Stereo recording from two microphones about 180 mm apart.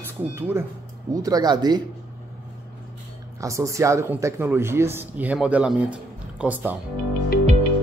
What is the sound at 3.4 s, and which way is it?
Speech, 15° right (ahead or behind).